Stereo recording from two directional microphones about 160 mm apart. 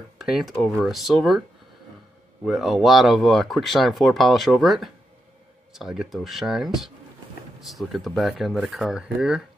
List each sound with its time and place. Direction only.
0.2 s speech: centre (ahead or behind)
2.4 s speech: centre (ahead or behind)